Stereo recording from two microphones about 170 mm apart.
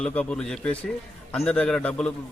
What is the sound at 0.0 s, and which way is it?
A man's voice, 5° left (ahead or behind).